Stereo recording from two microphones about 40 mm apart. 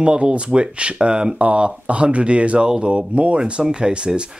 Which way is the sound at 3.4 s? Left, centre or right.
Centre.